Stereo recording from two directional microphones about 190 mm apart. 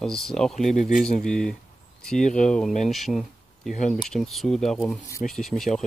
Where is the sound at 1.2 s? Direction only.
5° left (ahead or behind).